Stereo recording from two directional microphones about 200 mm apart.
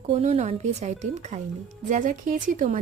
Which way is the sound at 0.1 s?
35° right (ahead or behind).